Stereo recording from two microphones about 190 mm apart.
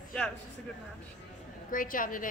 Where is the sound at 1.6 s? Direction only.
45° left (ahead or behind).